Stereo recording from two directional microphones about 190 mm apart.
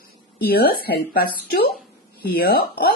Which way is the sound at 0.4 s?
50° left (ahead or behind).